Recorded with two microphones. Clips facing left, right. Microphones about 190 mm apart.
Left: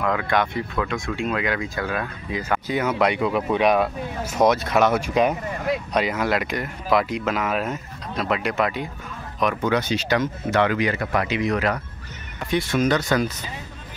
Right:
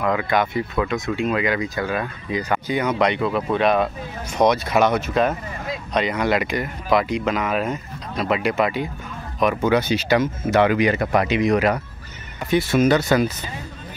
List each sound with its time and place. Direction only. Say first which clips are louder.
0.0 s speech: right 2 dB; centre (ahead or behind)
5.0 s speech: even; 15° left (ahead or behind); by 13.3 s 5° right (ahead or behind)